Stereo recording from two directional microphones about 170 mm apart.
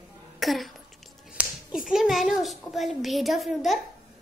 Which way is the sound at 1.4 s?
10° right (ahead or behind).